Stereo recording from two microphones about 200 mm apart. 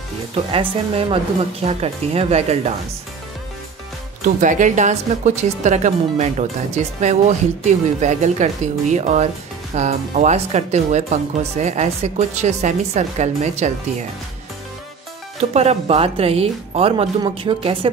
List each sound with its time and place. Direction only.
0.3 s speech: 25° right (ahead or behind)
4.4 s speech: 40° right (ahead or behind)
15.5 s speech: 30° right (ahead or behind)